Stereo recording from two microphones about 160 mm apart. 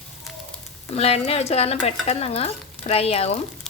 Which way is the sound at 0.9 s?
40° left (ahead or behind).